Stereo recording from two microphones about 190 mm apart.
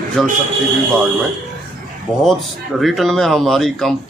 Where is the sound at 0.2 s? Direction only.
Centre (ahead or behind).